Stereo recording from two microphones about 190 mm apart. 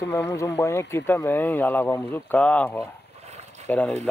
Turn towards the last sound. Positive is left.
turn(degrees=10)  # may be behind; listen again after turning